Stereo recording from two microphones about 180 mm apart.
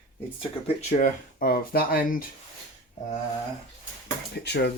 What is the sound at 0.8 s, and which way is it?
Speech, 45° left (ahead or behind).